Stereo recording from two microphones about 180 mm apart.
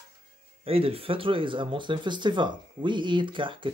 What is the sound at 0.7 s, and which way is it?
Speech, 30° right (ahead or behind).